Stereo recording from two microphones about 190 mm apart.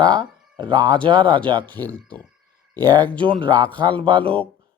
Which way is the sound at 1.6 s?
10° left (ahead or behind).